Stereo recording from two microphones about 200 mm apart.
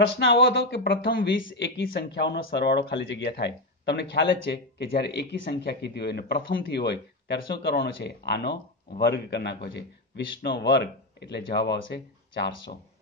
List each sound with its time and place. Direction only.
0.2 s speech: 60° left (ahead or behind)